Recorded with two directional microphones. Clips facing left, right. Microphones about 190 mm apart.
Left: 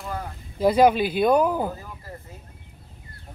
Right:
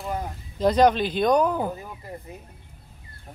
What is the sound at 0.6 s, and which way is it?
Speech, 10° left (ahead or behind).